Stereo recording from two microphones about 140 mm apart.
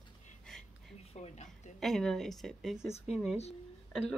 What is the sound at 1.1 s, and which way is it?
Speech, 55° left (ahead or behind).